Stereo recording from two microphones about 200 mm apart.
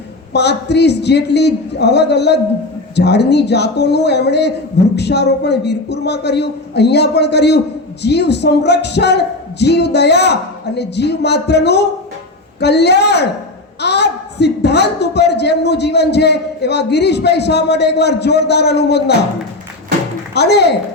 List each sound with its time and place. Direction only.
0.3 s a woman's voice: 55° left (ahead or behind)
20.3 s a woman's voice: 55° left (ahead or behind)